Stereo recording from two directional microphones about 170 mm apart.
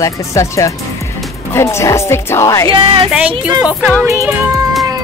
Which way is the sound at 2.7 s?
30° right (ahead or behind).